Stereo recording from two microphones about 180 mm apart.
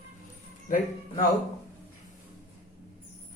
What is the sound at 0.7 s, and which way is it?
Speech, 50° left (ahead or behind).